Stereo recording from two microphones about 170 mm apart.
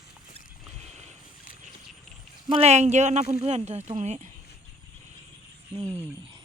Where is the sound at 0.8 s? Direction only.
40° right (ahead or behind).